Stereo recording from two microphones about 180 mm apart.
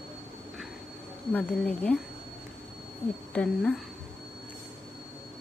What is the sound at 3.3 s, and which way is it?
Speech, 5° left (ahead or behind).